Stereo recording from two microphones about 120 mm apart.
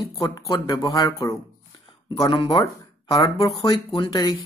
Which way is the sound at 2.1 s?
50° left (ahead or behind).